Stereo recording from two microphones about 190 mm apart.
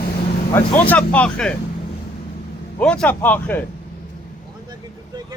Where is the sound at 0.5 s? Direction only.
10° left (ahead or behind).